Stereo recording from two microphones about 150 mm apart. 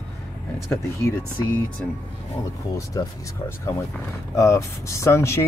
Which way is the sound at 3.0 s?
25° left (ahead or behind).